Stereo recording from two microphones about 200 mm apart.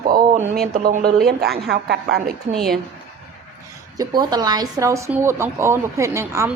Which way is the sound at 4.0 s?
20° right (ahead or behind).